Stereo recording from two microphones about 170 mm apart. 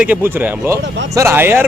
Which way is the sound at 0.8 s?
90° right.